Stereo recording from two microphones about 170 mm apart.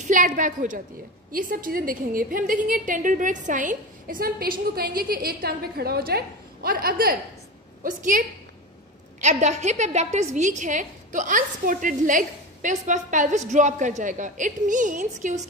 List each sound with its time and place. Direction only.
0.0 s a woman's voice: 45° right (ahead or behind)
9.2 s a woman's voice: 45° right (ahead or behind)